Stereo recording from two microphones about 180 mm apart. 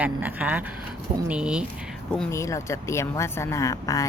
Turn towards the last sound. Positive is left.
turn(degrees=20)  # may be behind; listen again after turning